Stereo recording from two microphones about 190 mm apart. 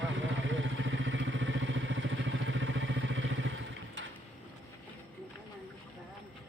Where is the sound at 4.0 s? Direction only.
90° right.